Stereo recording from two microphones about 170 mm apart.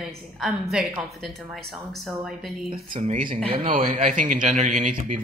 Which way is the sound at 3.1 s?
55° right (ahead or behind).